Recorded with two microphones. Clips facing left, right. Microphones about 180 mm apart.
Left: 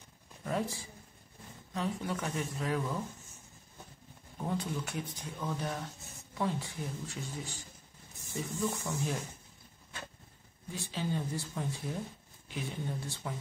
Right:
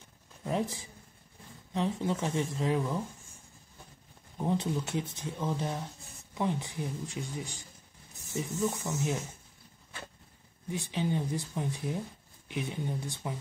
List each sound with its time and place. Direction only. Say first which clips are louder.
0.4 s speech: right 2 dB; 20° right (ahead or behind)
4.4 s speech: right 5 dB; 20° right (ahead or behind)
10.7 s speech: right 4 dB; 15° right (ahead or behind)